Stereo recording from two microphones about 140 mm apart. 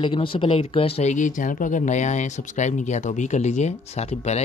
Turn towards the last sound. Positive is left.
turn(degrees=50)  # may be behind; listen again after turning